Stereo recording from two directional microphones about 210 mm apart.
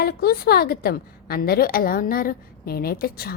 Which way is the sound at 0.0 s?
45° left (ahead or behind).